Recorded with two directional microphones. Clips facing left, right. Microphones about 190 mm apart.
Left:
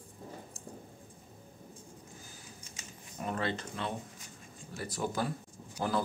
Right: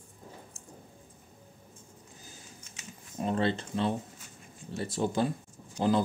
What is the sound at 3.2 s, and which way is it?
Speech, 30° right (ahead or behind).